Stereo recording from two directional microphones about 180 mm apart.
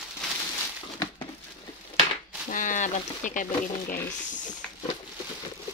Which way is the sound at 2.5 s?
45° left (ahead or behind).